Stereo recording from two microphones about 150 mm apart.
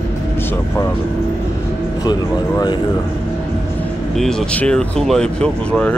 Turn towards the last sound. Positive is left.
turn(degrees=5)  # may be behind; listen again after turning